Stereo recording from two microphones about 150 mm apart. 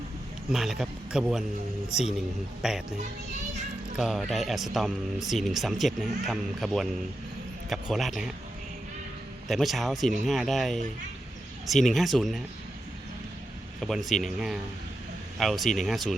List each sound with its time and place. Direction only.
0.5 s speech: centre (ahead or behind)
2.6 s speech: 5° right (ahead or behind)
3.9 s speech: centre (ahead or behind)
9.5 s speech: centre (ahead or behind)
13.8 s speech: centre (ahead or behind)